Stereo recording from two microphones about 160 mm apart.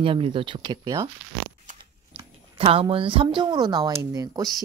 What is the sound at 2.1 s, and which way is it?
Speech, 35° right (ahead or behind).